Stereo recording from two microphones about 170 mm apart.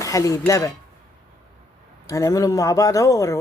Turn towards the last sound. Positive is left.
turn(degrees=20)  # may be behind; listen again after turning